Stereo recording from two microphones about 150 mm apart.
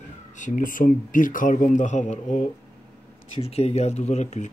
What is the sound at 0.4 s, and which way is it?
Speech, 65° left (ahead or behind).